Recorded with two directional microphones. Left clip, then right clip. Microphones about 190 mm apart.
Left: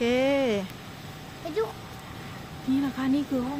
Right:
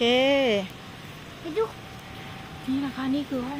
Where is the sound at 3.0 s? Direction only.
10° left (ahead or behind).